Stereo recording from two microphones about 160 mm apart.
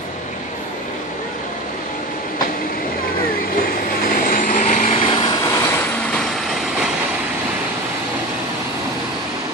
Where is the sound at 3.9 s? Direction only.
65° left (ahead or behind).